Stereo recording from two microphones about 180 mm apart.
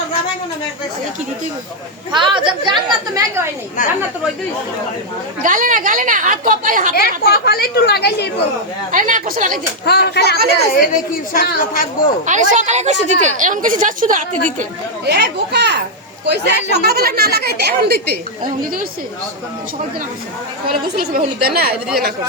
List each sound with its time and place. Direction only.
2.1 s a woman's voice: 25° right (ahead or behind)
3.2 s a woman's voice: 15° right (ahead or behind)
5.4 s a woman's voice: 45° right (ahead or behind)
6.9 s speech: 60° left (ahead or behind)
8.9 s a woman's voice: 50° right (ahead or behind)
9.8 s speech: 65° left (ahead or behind)
10.8 s speech: 50° left (ahead or behind)
12.2 s a woman's voice: 45° right (ahead or behind)
15.0 s a child's voice: 65° right (ahead or behind)
20.9 s speech: 55° right (ahead or behind)